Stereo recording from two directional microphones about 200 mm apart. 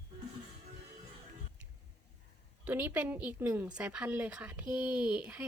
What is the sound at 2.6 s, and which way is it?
A woman's voice, 10° right (ahead or behind).